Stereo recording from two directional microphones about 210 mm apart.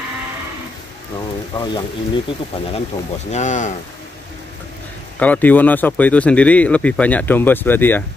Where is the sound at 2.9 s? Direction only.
30° left (ahead or behind).